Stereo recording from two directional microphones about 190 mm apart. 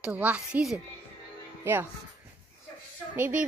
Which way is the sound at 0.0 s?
5° right (ahead or behind).